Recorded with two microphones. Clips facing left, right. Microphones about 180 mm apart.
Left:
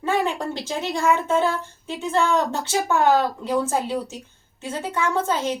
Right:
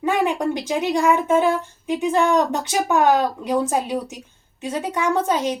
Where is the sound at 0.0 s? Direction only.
15° right (ahead or behind).